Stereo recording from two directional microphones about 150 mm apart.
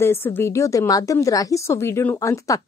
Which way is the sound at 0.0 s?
15° left (ahead or behind).